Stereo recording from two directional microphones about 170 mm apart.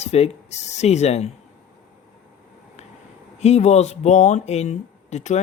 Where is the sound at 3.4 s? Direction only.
40° left (ahead or behind).